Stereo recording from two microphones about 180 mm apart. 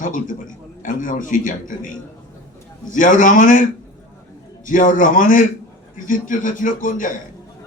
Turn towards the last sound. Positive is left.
turn(degrees=45)  # may be behind; listen again after turning